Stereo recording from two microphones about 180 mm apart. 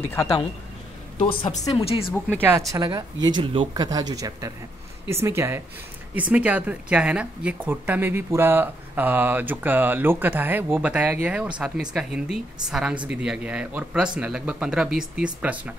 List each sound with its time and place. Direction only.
0.1 s speech: 20° left (ahead or behind)
2.2 s a woman's voice: 10° right (ahead or behind)